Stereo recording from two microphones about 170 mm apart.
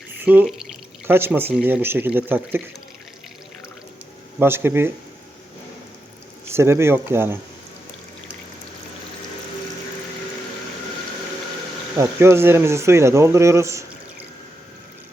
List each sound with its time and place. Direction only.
0.2 s speech: 10° right (ahead or behind)
0.4 s drip: centre (ahead or behind)
1.0 s speech: 10° right (ahead or behind)
4.4 s speech: 15° right (ahead or behind)
6.5 s speech: 15° right (ahead or behind)
11.9 s speech: 15° right (ahead or behind)